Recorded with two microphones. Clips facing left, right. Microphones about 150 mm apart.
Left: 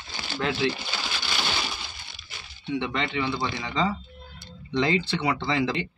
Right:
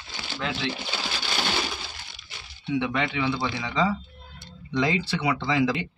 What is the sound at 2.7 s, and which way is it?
Speech, 5° right (ahead or behind).